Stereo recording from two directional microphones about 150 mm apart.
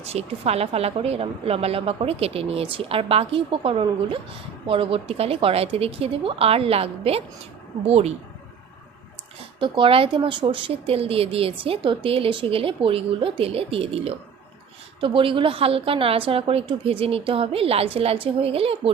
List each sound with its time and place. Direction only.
0.0 s speech: 45° right (ahead or behind)
9.6 s speech: 30° right (ahead or behind)